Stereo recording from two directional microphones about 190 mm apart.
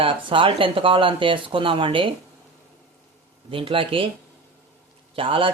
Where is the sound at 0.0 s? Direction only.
25° right (ahead or behind).